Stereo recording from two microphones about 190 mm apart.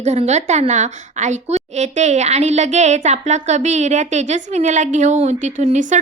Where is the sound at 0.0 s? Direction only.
35° right (ahead or behind).